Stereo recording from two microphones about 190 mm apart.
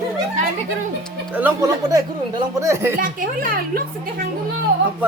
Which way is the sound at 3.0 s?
45° right (ahead or behind).